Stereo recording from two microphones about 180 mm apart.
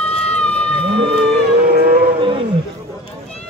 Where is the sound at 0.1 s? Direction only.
35° left (ahead or behind).